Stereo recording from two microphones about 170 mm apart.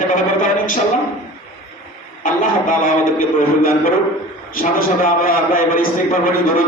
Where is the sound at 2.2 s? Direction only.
50° left (ahead or behind).